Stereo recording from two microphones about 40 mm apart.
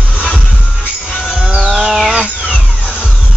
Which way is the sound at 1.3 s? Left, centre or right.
Centre.